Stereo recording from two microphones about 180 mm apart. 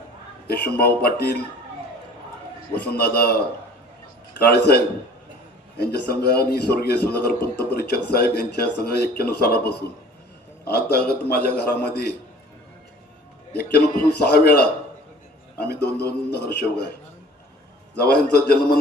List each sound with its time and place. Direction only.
0.4 s a man's voice: 60° left (ahead or behind)
2.8 s a man's voice: 60° left (ahead or behind)
11.6 s a man's voice: 10° left (ahead or behind)
13.6 s a man's voice: 60° left (ahead or behind)
17.9 s a man's voice: 60° left (ahead or behind)